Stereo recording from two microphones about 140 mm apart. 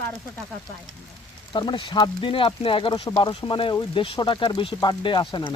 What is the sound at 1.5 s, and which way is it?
Speech, 35° left (ahead or behind).